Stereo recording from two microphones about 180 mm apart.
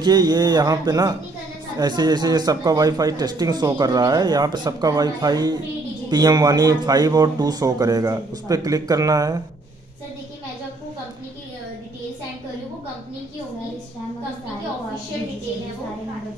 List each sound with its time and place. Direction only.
0.0 s speech: 20° right (ahead or behind)